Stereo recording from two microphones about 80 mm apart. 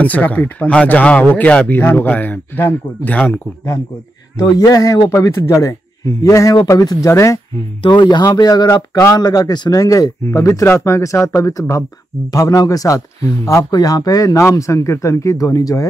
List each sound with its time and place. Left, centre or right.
0.0 s speech: centre
4.4 s speech: left
5.1 s speech: left
7.8 s speech: left
13.7 s speech: left